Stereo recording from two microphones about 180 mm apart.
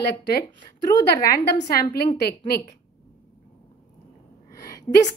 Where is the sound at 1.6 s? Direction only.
60° left (ahead or behind).